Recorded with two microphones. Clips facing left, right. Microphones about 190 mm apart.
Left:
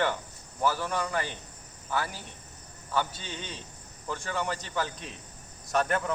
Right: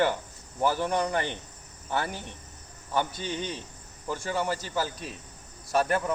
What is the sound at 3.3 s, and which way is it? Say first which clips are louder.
Cricket: right 7 dB; 15° right (ahead or behind).